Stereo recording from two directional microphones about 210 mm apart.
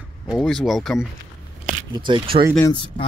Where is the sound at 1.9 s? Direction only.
25° right (ahead or behind).